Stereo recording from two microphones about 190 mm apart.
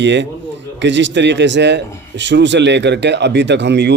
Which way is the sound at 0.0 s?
70° right (ahead or behind).